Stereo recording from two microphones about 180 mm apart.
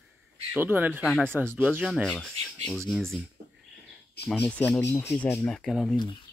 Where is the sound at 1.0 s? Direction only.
Centre (ahead or behind).